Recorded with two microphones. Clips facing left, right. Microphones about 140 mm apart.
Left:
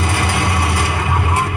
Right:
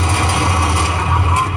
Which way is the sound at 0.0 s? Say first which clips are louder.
Right 1 dB; 35° right (ahead or behind).